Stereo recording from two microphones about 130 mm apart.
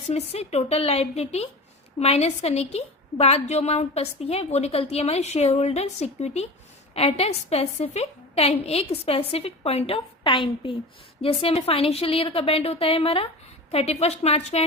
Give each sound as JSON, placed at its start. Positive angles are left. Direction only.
{"t": 0.1, "sound": "a woman's voice", "side_deg": 50}